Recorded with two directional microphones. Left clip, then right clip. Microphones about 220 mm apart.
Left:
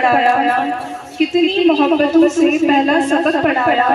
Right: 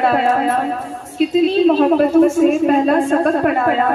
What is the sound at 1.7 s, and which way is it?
A woman's voice, 35° left (ahead or behind).